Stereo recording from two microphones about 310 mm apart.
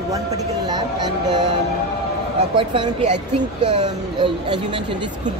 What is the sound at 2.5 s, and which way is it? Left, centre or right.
Speech, centre.